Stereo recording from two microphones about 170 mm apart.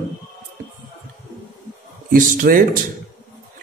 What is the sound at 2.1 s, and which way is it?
Speech, 50° right (ahead or behind).